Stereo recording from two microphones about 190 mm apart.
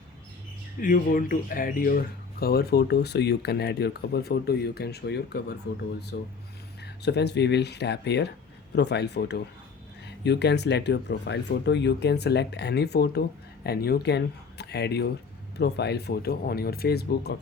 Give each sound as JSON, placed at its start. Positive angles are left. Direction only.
{"t": 0.8, "sound": "speech", "side_deg": 45}